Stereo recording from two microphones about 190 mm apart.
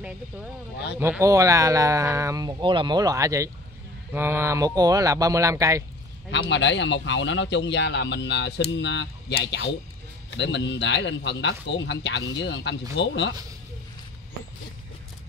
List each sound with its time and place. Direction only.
0.9 s speech: 10° right (ahead or behind)
6.5 s speech: 70° left (ahead or behind)